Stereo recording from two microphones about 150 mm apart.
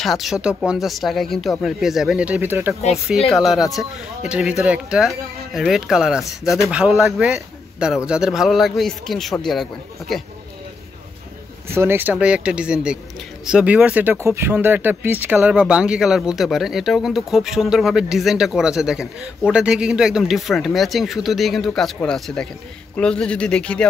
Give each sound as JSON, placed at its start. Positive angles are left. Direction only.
{"t": 0.0, "sound": "a man's voice", "side_deg": 0}
{"t": 3.3, "sound": "a man's voice", "side_deg": 0}
{"t": 11.7, "sound": "a man's voice", "side_deg": -15}